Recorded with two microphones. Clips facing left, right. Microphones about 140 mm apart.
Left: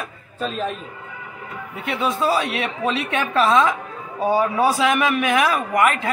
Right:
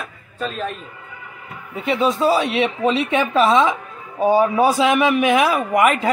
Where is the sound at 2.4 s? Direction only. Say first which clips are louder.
Right 5 dB; 30° right (ahead or behind).